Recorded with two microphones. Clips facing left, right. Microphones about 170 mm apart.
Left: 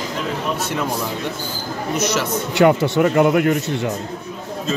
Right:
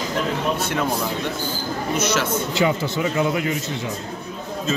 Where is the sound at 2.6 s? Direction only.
65° left (ahead or behind).